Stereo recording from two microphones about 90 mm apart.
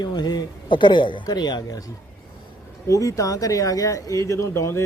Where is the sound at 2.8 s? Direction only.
40° left (ahead or behind).